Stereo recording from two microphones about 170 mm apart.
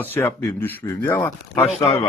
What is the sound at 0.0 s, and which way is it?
Speech, 10° left (ahead or behind).